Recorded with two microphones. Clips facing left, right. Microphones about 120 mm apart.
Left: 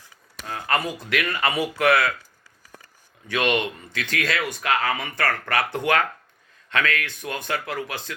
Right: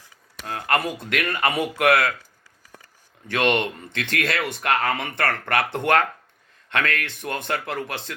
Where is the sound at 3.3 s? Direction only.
60° right (ahead or behind).